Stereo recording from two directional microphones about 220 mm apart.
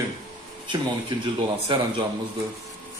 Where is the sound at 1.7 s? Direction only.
20° right (ahead or behind).